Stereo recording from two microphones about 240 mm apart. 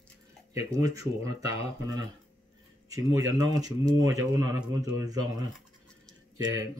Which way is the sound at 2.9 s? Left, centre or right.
Centre.